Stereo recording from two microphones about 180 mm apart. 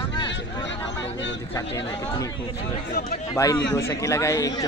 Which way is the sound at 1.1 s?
85° left.